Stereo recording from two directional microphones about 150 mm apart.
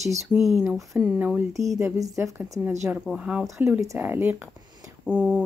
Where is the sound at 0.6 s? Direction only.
15° right (ahead or behind).